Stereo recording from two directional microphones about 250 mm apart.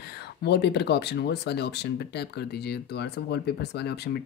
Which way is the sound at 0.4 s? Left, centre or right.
Left.